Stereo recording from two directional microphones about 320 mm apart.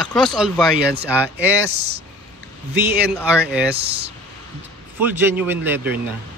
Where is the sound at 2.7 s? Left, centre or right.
Centre.